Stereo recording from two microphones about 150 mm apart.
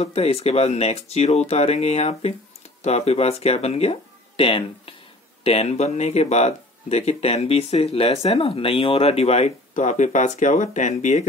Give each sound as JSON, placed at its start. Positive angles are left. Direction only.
{"t": 0.0, "sound": "speech", "side_deg": 45}